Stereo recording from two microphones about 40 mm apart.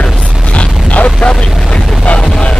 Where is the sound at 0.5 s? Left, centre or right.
Left.